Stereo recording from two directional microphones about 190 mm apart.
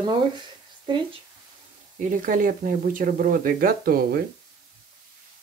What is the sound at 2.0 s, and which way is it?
Speech, 45° right (ahead or behind).